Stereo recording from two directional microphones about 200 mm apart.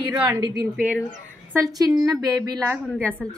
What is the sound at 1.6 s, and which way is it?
A woman's voice, 20° right (ahead or behind).